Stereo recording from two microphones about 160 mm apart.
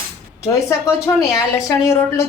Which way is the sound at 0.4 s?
20° left (ahead or behind).